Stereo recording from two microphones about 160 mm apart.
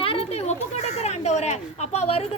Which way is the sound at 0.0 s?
35° left (ahead or behind).